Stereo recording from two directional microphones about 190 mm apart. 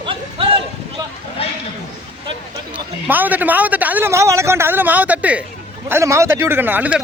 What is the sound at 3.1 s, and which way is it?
A man's voice, 10° right (ahead or behind).